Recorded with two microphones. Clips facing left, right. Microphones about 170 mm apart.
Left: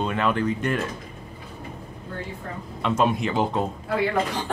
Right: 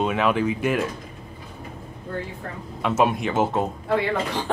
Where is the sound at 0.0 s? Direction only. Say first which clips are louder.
Right 2 dB; 5° right (ahead or behind).